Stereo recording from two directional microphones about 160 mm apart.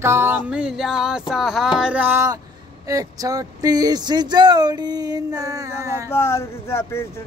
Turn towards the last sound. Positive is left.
turn(degrees=15)  # may be behind; listen again after turning